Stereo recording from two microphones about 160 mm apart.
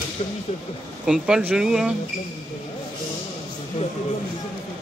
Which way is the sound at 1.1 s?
5° right (ahead or behind).